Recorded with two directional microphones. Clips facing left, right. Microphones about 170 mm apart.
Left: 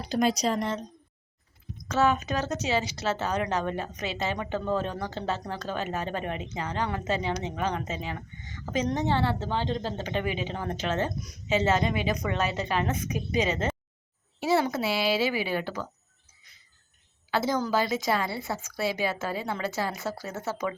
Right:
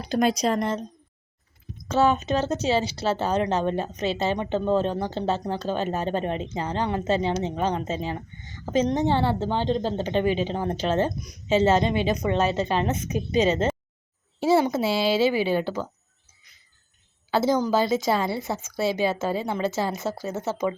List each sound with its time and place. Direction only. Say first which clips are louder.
0.1 s speech: right 3 dB; 55° right (ahead or behind)
1.9 s speech: right 4 dB; 30° right (ahead or behind)
17.3 s speech: right 5 dB; 30° right (ahead or behind)